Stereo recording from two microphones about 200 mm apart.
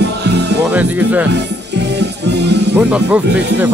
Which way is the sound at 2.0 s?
55° right (ahead or behind).